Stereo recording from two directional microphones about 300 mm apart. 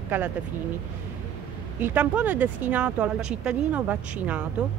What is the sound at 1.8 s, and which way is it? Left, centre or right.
A woman's voice, centre.